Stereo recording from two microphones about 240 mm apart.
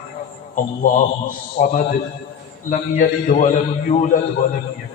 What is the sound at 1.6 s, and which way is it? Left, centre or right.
A man's voice, left.